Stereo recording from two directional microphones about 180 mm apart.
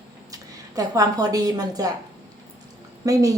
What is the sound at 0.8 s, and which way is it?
A woman's voice, 20° right (ahead or behind).